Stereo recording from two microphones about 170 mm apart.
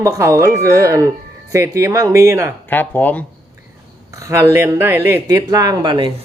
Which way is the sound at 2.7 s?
10° left (ahead or behind).